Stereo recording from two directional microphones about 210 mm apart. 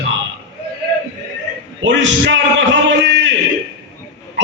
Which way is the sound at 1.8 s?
60° right (ahead or behind).